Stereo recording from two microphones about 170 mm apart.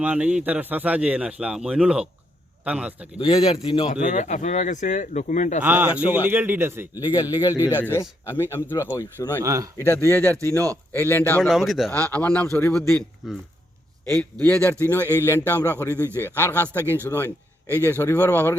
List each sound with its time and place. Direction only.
0.0 s a man's voice: 5° right (ahead or behind)
3.2 s speech: 30° left (ahead or behind)
5.6 s a man's voice: 10° right (ahead or behind)
7.0 s a man's voice: 20° left (ahead or behind)
9.4 s a man's voice: 20° right (ahead or behind)
9.7 s speech: 15° left (ahead or behind)
11.4 s speech: centre (ahead or behind)
11.9 s speech: 10° left (ahead or behind)